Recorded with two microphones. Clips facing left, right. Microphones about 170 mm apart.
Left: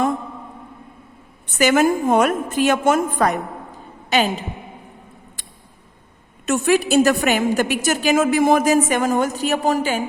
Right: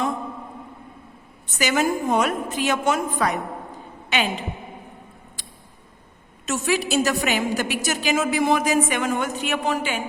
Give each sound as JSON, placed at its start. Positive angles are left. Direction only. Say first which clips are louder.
{"t": 1.5, "sound": "a woman's voice", "louder": "left 6 dB", "side_deg": 50}
{"t": 5.4, "sound": "scissors", "louder": "even", "side_deg": 55}
{"t": 6.4, "sound": "a woman's voice", "louder": "left 6 dB", "side_deg": 55}